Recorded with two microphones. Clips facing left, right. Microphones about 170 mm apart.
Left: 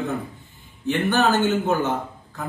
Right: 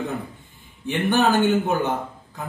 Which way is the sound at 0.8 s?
15° right (ahead or behind).